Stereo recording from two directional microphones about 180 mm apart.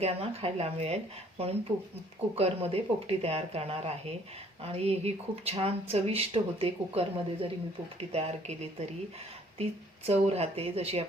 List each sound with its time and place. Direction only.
0.0 s speech: 35° right (ahead or behind)
10.1 s speech: 35° right (ahead or behind)